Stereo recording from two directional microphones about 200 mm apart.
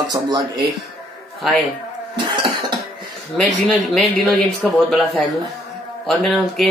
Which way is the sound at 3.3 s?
5° left (ahead or behind).